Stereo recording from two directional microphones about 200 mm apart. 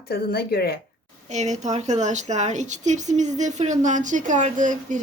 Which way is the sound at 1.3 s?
35° right (ahead or behind).